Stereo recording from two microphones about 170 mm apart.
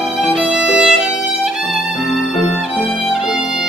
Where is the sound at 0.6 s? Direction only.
5° right (ahead or behind).